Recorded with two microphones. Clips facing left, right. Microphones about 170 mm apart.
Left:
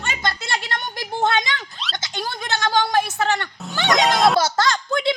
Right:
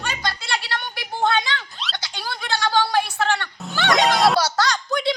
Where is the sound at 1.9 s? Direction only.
45° left (ahead or behind).